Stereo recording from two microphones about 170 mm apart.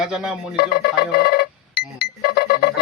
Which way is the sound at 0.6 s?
65° left (ahead or behind).